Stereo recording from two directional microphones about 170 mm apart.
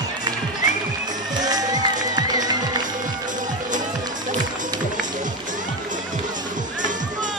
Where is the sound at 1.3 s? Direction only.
25° right (ahead or behind).